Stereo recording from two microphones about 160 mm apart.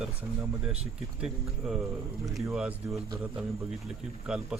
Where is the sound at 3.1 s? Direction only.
15° right (ahead or behind).